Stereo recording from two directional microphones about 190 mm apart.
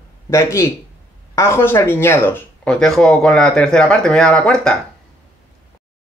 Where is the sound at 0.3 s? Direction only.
15° left (ahead or behind).